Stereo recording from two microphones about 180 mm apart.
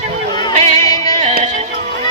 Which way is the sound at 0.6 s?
40° right (ahead or behind).